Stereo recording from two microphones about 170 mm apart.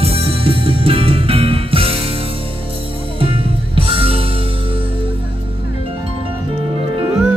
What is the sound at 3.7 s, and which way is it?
Music, 35° right (ahead or behind).